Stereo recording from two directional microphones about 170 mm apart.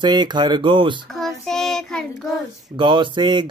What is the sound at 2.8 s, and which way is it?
Speech, 30° right (ahead or behind).